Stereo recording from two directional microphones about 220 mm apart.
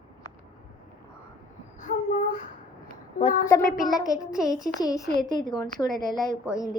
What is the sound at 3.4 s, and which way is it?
Speech, 15° left (ahead or behind).